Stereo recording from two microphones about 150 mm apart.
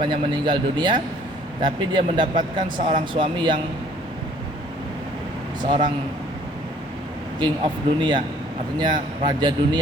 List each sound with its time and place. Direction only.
0.0 s speech: 30° right (ahead or behind)
5.6 s speech: 35° right (ahead or behind)
7.3 s speech: 30° right (ahead or behind)